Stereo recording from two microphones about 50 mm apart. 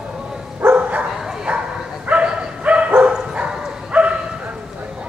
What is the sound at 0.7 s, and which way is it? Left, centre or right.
Dog, right.